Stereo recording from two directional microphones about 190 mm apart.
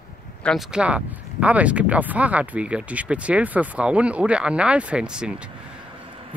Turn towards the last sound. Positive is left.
turn(degrees=-5)  # may be behind; listen again after turning